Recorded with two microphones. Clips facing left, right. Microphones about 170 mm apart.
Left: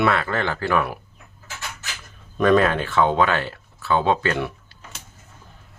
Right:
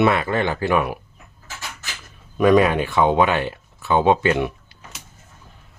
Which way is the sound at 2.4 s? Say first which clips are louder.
Right 2 dB; 10° right (ahead or behind).